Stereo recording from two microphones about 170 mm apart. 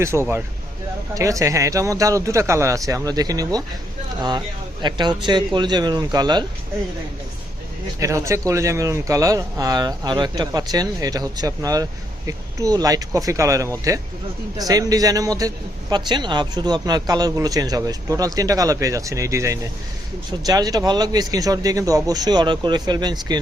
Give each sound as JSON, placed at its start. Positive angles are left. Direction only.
{"t": 0.0, "sound": "speech", "side_deg": -15}
{"t": 7.9, "sound": "speech", "side_deg": -20}